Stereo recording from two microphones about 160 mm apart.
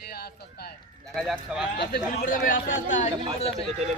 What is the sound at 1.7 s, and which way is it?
Speech, 85° left.